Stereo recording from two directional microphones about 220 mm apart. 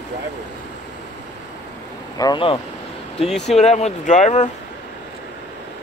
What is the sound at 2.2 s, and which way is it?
Speech, 20° left (ahead or behind).